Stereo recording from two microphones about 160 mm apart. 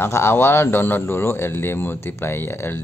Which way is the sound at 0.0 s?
15° left (ahead or behind).